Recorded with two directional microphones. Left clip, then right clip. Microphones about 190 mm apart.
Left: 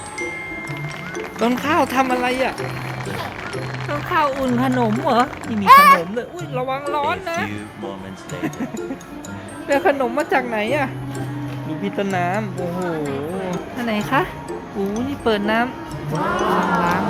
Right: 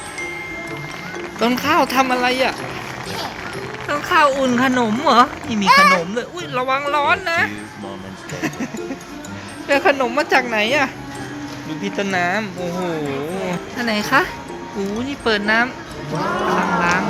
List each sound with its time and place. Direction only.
1.4 s speech: 5° left (ahead or behind)
3.8 s speech: centre (ahead or behind)
5.6 s a child's voice: 70° left (ahead or behind)
6.1 s speech: centre (ahead or behind)
9.6 s speech: centre (ahead or behind)